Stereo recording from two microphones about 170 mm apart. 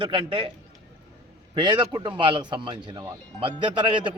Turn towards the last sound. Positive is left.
turn(degrees=-30)  # may be behind; listen again after turning